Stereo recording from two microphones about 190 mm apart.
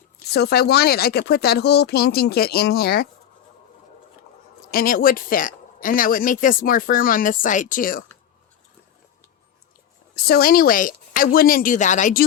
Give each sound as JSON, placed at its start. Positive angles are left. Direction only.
{"t": 0.3, "sound": "speech", "side_deg": 55}
{"t": 4.7, "sound": "speech", "side_deg": 50}
{"t": 10.2, "sound": "speech", "side_deg": 55}